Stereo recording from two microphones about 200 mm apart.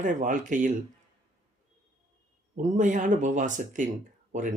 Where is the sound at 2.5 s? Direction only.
40° right (ahead or behind).